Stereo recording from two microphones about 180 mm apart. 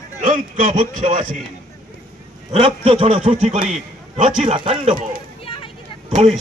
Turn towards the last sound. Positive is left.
turn(degrees=-40)  # may be behind; listen again after turning